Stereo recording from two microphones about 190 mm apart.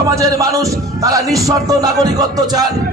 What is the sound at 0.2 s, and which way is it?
A man's voice, 15° right (ahead or behind).